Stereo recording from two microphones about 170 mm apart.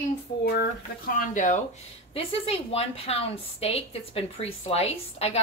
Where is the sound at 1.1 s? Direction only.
45° left (ahead or behind).